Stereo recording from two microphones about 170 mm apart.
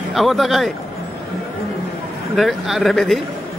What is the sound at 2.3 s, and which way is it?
Speech, centre (ahead or behind).